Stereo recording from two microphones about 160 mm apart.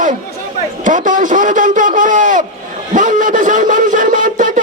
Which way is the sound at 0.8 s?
55° right (ahead or behind).